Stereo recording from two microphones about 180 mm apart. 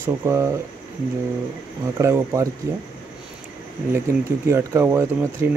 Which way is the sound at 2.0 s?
15° right (ahead or behind).